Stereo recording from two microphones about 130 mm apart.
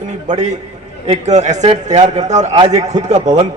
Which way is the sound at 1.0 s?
60° right (ahead or behind).